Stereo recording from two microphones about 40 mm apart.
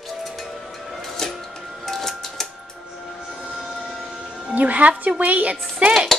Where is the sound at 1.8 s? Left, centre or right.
Centre.